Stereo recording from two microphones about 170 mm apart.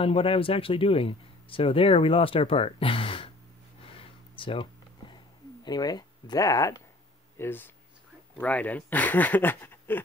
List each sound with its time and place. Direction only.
0.0 s speech: 35° left (ahead or behind)
3.8 s a sound: 35° left (ahead or behind)
7.3 s speech: 10° left (ahead or behind)